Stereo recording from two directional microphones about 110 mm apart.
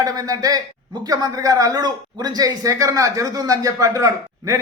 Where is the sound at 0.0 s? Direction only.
35° right (ahead or behind).